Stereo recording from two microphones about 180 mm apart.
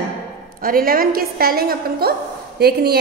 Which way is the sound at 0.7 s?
55° right (ahead or behind).